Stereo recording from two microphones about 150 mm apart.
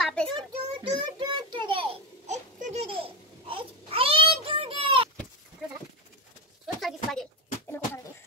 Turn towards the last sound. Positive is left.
turn(degrees=0)  # may be behind; listen again after turning